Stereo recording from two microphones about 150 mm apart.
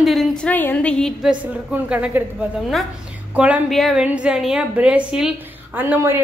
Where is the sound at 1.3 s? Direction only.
10° right (ahead or behind).